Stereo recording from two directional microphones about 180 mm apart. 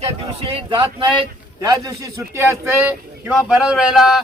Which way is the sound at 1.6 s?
20° right (ahead or behind).